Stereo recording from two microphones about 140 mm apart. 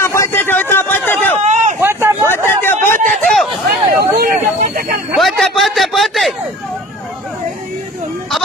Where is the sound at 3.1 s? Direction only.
Centre (ahead or behind).